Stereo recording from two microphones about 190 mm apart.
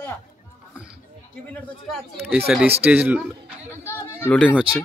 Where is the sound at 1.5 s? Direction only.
5° left (ahead or behind).